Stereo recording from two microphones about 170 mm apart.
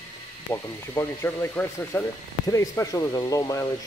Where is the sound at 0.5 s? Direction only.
15° left (ahead or behind).